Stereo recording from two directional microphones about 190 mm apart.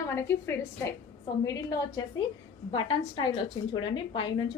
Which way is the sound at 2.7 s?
25° left (ahead or behind).